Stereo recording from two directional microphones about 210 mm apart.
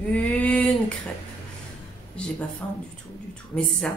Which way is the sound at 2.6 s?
15° left (ahead or behind).